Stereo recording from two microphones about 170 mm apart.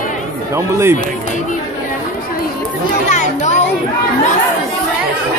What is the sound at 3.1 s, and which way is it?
Speech, 45° left (ahead or behind).